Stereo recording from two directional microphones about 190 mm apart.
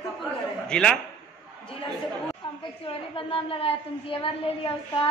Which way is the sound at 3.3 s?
30° left (ahead or behind).